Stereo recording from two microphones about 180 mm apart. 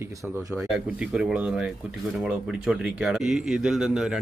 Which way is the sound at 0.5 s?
5° right (ahead or behind).